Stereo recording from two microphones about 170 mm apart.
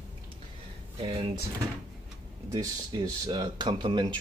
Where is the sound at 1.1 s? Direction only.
30° right (ahead or behind).